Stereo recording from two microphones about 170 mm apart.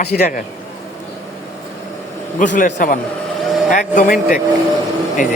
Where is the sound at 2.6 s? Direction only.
50° left (ahead or behind).